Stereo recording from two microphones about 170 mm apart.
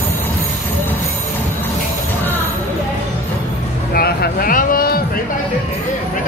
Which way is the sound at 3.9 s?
65° left (ahead or behind).